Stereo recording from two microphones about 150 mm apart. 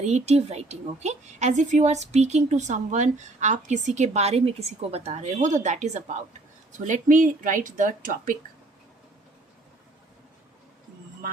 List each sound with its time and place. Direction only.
0.0 s a woman's voice: 50° right (ahead or behind); by 8.4 s 65° right (ahead or behind)